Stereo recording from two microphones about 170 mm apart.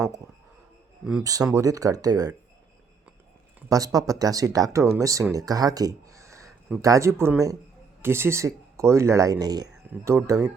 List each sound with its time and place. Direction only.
1.2 s speech: 20° right (ahead or behind)
3.7 s speech: 20° right (ahead or behind)